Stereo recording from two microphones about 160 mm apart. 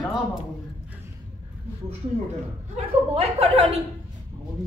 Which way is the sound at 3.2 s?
40° right (ahead or behind).